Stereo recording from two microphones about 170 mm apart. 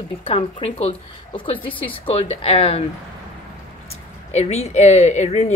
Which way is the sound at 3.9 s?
40° left (ahead or behind).